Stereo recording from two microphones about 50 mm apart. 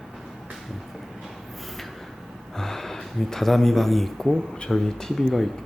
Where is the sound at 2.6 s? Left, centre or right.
Centre.